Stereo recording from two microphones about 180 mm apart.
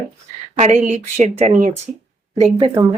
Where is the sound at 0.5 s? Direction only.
40° right (ahead or behind).